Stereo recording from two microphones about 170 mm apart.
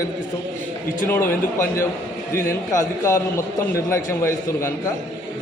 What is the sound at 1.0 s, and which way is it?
A man's voice, 15° left (ahead or behind).